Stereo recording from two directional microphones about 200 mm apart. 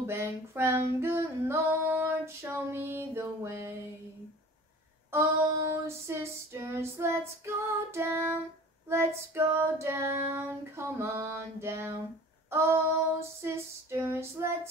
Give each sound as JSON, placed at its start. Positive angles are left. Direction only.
{"t": 0.0, "sound": "female singing", "side_deg": -10}
{"t": 5.1, "sound": "female singing", "side_deg": -15}